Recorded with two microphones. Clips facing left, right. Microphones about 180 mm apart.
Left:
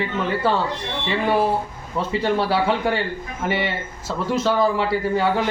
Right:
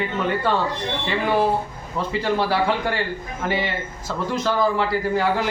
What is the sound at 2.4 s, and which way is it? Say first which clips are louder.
Speech: left 1 dB; centre (ahead or behind).